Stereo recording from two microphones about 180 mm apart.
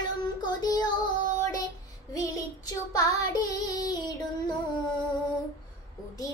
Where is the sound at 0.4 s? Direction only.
25° left (ahead or behind).